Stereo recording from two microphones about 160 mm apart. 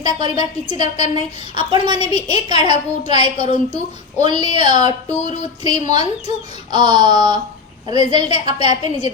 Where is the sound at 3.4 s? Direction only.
40° left (ahead or behind).